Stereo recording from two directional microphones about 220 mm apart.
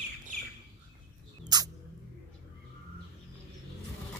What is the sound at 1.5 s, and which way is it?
Music, 20° right (ahead or behind).